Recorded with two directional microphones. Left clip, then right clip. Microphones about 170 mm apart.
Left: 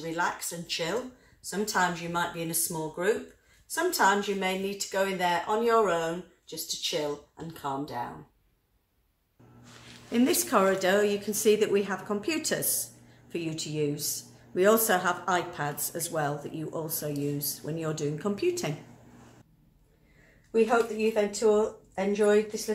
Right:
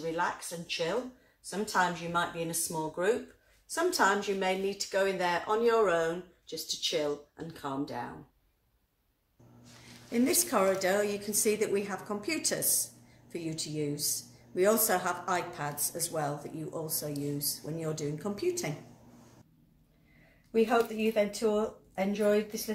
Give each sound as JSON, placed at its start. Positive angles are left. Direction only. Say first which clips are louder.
{"t": 0.0, "sound": "a woman's voice", "louder": "left 2 dB", "side_deg": -10}
{"t": 10.1, "sound": "a woman's voice", "louder": "left 3 dB", "side_deg": 45}
{"t": 20.5, "sound": "speech", "louder": "left 3 dB", "side_deg": 35}